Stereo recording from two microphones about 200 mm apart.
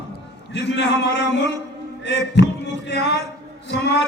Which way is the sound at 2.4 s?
60° left (ahead or behind).